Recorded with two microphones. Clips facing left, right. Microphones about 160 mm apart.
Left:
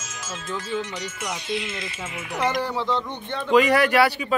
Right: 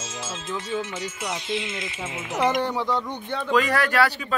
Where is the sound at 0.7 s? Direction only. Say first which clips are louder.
Even; 5° right (ahead or behind).